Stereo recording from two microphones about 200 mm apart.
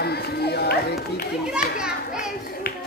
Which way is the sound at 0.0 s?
55° left (ahead or behind).